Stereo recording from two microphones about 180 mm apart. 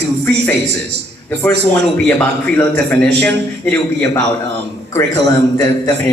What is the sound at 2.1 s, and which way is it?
A man's voice, 10° left (ahead or behind).